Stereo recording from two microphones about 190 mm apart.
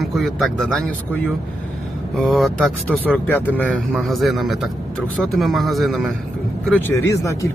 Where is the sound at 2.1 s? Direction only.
Centre (ahead or behind).